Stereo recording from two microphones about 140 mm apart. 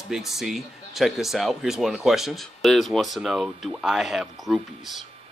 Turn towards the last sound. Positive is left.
turn(degrees=-5)  # may be behind; listen again after turning